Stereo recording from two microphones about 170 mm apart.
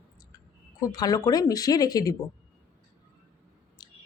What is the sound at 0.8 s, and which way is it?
Speech, 20° left (ahead or behind).